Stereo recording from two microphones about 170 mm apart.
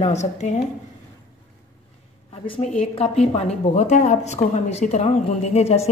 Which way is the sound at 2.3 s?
30° left (ahead or behind).